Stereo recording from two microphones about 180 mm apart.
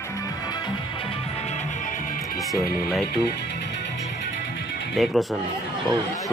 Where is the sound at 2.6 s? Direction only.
60° left (ahead or behind).